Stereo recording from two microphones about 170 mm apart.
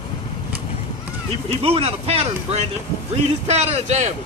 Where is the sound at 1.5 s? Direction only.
35° right (ahead or behind).